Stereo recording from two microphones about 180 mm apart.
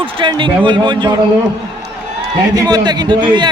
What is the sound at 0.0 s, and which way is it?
Speech, 25° right (ahead or behind).